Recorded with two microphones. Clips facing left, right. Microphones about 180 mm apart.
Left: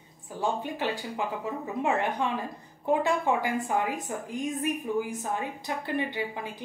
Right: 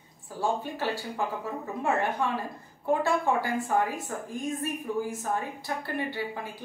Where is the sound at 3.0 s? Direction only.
20° left (ahead or behind).